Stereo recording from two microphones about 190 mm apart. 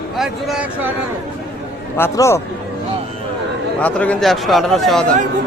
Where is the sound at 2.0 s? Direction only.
15° left (ahead or behind).